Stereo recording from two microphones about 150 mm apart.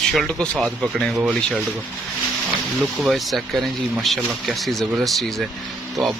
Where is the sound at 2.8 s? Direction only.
Centre (ahead or behind).